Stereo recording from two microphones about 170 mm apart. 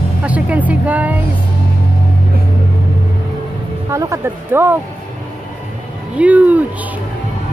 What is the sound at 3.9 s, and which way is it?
Speech, 15° right (ahead or behind).